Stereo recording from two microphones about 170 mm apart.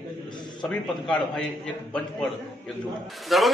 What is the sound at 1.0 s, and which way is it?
Speech, 5° left (ahead or behind).